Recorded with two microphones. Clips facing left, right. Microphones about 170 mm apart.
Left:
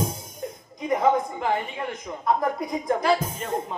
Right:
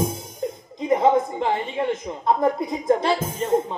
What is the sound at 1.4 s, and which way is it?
A man's voice, 25° right (ahead or behind).